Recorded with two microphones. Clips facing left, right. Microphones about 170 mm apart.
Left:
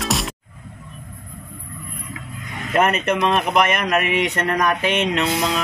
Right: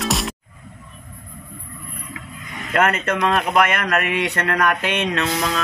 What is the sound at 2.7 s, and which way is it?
A man's voice, 15° left (ahead or behind).